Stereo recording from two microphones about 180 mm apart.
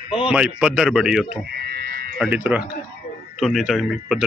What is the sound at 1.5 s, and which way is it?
Frog, 60° right (ahead or behind).